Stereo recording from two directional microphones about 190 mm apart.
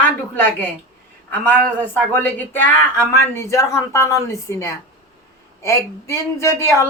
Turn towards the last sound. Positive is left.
turn(degrees=15)  # may be behind; listen again after turning